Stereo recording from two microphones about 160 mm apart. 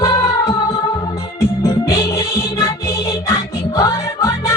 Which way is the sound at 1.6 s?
20° left (ahead or behind).